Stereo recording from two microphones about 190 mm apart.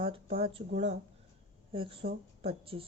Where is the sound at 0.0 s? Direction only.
30° right (ahead or behind).